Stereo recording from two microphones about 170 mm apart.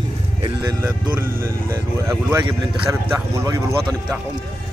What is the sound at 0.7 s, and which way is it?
Speech, 10° right (ahead or behind).